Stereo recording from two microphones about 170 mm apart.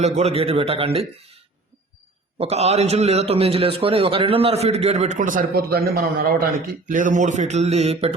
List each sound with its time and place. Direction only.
0.0 s a man's voice: 40° right (ahead or behind)
2.4 s a man's voice: 40° right (ahead or behind)